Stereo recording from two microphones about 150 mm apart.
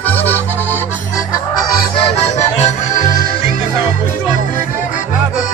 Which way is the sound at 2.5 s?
55° left (ahead or behind).